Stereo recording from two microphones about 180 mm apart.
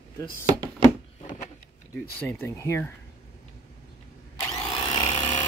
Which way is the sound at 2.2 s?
15° left (ahead or behind).